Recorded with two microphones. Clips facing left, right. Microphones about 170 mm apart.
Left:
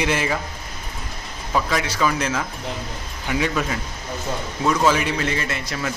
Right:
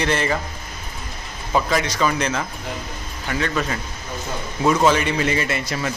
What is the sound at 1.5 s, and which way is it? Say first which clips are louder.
A man's voice: right 2 dB; centre (ahead or behind).